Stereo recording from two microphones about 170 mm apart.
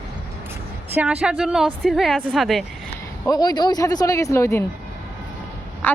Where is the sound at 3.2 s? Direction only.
25° left (ahead or behind).